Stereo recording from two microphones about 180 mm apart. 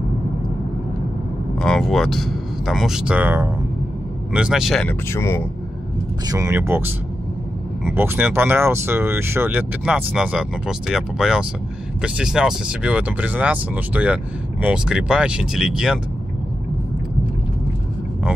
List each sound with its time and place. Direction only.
1.6 s speech: centre (ahead or behind)
5.1 s speech: 15° left (ahead or behind)
6.2 s speech: 20° right (ahead or behind)
7.9 s speech: 10° right (ahead or behind)